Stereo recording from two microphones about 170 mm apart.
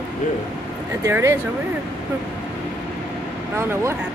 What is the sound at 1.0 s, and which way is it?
Speech, 15° right (ahead or behind).